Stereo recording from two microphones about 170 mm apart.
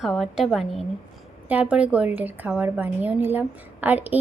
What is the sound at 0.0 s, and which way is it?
A woman's voice, centre (ahead or behind).